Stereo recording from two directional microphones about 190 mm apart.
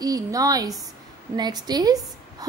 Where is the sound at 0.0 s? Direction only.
20° right (ahead or behind).